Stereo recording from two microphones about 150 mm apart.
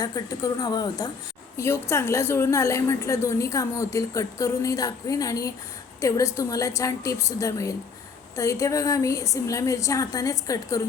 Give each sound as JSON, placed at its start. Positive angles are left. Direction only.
{"t": 0.0, "sound": "a woman's voice", "side_deg": 25}